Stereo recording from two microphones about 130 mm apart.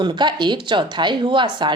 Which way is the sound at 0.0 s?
35° right (ahead or behind).